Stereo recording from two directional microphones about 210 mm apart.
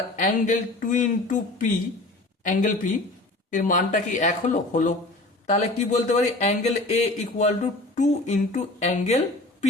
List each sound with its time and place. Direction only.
0.2 s speech: 35° left (ahead or behind)